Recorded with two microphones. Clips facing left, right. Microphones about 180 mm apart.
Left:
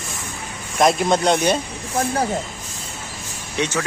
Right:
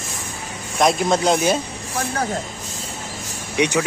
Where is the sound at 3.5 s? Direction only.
15° right (ahead or behind).